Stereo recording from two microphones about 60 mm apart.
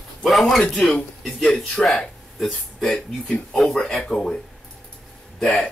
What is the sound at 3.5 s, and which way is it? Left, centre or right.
Speech, centre.